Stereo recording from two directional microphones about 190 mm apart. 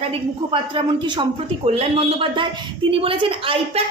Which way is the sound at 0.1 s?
25° right (ahead or behind).